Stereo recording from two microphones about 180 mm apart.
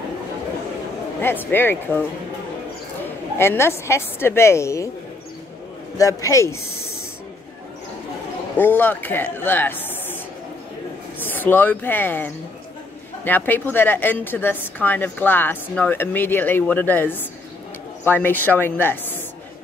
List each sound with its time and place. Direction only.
1.2 s a woman's voice: 10° left (ahead or behind)
3.3 s a woman's voice: 15° left (ahead or behind)
5.9 s a woman's voice: 20° left (ahead or behind)
8.5 s a woman's voice: 10° left (ahead or behind)
11.2 s a woman's voice: 10° left (ahead or behind)